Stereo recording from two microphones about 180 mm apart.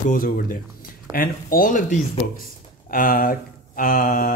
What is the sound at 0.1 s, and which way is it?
Speech, 50° left (ahead or behind).